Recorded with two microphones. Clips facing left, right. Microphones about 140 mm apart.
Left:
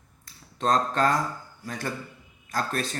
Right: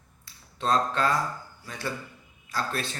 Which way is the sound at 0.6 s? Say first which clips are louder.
Left 2 dB; 45° left (ahead or behind).